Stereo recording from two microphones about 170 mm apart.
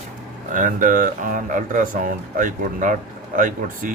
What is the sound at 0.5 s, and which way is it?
Speech, 50° right (ahead or behind).